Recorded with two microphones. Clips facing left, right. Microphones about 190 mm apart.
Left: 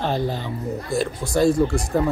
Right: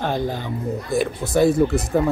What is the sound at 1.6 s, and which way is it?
Speech, 5° right (ahead or behind).